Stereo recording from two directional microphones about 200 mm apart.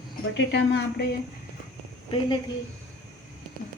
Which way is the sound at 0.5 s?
60° left (ahead or behind).